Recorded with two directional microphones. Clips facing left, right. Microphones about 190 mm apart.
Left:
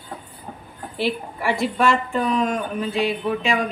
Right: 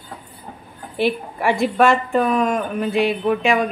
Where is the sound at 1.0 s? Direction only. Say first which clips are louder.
Right 4 dB; 55° right (ahead or behind).